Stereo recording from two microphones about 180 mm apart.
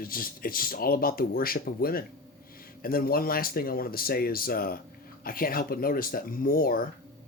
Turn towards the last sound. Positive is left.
turn(degrees=55)  # may be behind; listen again after turning